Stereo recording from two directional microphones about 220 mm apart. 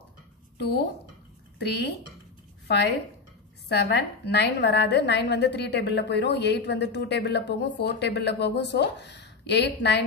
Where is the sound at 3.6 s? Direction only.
50° left (ahead or behind).